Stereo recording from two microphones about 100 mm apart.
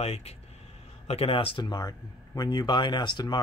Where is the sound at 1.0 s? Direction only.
70° left (ahead or behind).